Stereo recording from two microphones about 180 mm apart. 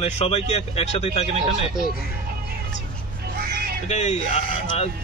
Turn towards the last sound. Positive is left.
turn(degrees=35)  # may be behind; listen again after turning